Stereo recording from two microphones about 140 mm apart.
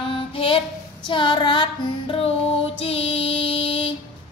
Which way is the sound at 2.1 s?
45° left (ahead or behind).